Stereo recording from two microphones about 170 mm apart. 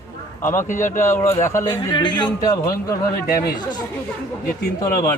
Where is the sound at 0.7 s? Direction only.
50° left (ahead or behind).